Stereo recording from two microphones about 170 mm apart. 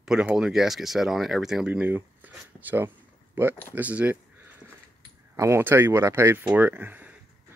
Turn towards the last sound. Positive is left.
turn(degrees=-10)  # may be behind; listen again after turning